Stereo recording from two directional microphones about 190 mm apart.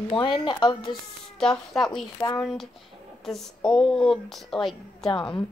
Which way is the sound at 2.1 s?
20° left (ahead or behind).